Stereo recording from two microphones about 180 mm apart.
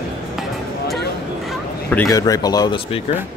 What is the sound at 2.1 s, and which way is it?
Speech, 20° left (ahead or behind).